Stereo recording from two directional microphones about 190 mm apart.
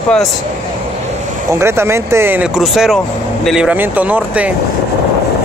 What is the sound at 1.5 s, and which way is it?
Speech, 15° right (ahead or behind).